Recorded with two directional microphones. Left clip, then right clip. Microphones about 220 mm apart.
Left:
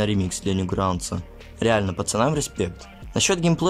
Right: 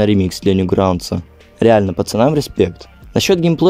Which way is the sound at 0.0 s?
25° right (ahead or behind).